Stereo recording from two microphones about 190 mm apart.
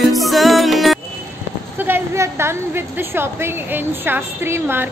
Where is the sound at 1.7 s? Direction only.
10° right (ahead or behind).